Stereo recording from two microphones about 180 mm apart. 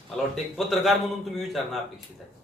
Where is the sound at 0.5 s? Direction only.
Centre (ahead or behind).